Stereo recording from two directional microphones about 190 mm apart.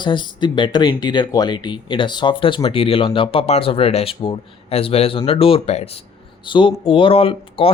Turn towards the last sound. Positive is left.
turn(degrees=30)  # may be behind; listen again after turning